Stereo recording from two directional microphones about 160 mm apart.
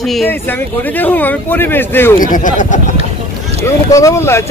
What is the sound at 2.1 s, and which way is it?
Speech, 55° left (ahead or behind).